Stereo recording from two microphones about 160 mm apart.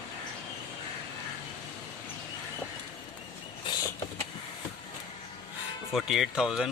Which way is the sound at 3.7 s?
30° left (ahead or behind).